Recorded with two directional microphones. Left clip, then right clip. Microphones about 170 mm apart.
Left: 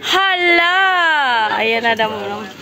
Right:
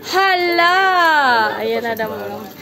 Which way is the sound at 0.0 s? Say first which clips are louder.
Left 1 dB; 10° left (ahead or behind).